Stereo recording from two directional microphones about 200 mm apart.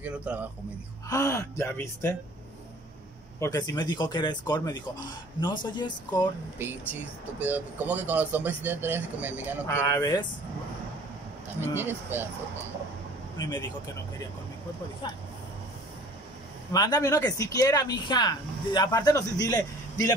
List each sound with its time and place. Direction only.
0.0 s speech: 5° right (ahead or behind)
1.0 s speech: 15° left (ahead or behind)
3.3 s speech: 15° left (ahead or behind)
6.6 s speech: 10° right (ahead or behind)
9.7 s speech: 15° left (ahead or behind)
11.7 s speech: 10° right (ahead or behind)
13.4 s speech: 20° left (ahead or behind)
16.7 s speech: 20° left (ahead or behind)